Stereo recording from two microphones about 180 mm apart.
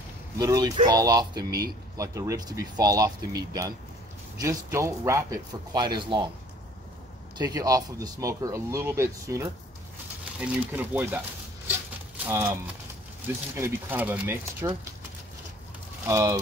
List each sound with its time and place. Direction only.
0.4 s speech: 20° right (ahead or behind)
4.4 s speech: 15° right (ahead or behind)
7.3 s speech: 20° right (ahead or behind)
13.6 s speech: 10° right (ahead or behind)
16.1 s speech: 15° right (ahead or behind)